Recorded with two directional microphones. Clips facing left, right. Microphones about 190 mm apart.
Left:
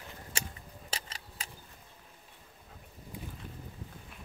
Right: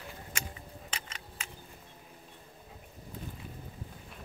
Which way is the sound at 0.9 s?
35° left (ahead or behind).